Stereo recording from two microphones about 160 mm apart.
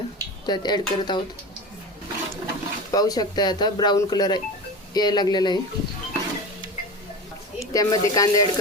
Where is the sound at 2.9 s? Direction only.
25° left (ahead or behind).